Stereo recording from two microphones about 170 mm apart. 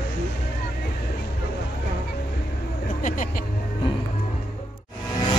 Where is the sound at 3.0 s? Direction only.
50° left (ahead or behind).